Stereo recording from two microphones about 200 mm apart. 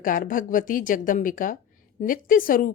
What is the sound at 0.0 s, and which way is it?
A woman's voice, 45° left (ahead or behind).